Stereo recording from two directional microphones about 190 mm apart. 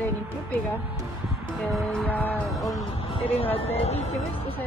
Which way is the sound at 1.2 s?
Centre (ahead or behind).